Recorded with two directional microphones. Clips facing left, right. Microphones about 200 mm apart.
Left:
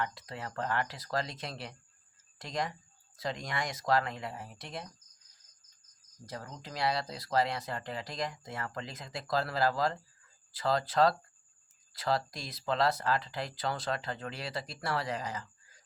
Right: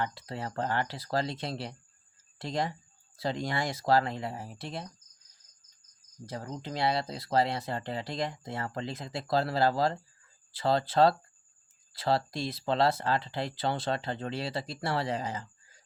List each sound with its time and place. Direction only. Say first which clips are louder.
0.0 s speech: right 3 dB; 30° right (ahead or behind)
6.2 s speech: right 6 dB; 30° right (ahead or behind)